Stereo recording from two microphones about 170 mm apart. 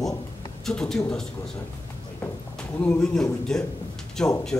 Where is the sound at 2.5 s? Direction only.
5° left (ahead or behind).